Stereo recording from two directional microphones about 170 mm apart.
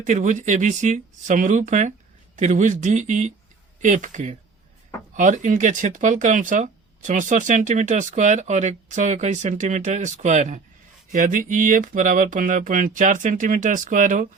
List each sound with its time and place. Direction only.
0.0 s speech: 45° right (ahead or behind)